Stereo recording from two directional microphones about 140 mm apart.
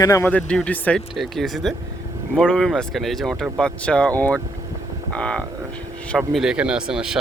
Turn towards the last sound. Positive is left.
turn(degrees=-5)  # may be behind; listen again after turning